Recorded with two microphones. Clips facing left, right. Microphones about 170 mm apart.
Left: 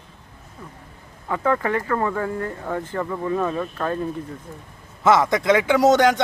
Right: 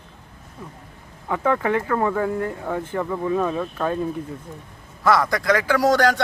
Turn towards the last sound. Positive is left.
turn(degrees=20)  # may be behind; listen again after turning